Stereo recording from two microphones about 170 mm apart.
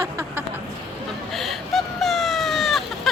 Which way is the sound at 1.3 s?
Centre (ahead or behind).